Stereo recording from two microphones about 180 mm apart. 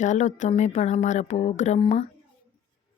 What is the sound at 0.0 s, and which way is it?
Speech, 40° left (ahead or behind).